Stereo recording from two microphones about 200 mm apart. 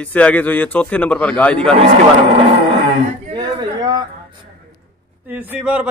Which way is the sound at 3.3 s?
20° right (ahead or behind).